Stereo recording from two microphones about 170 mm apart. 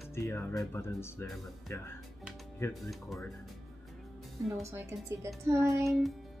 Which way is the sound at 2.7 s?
Centre (ahead or behind).